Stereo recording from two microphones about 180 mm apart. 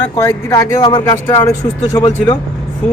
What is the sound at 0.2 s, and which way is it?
A man's voice, 20° left (ahead or behind).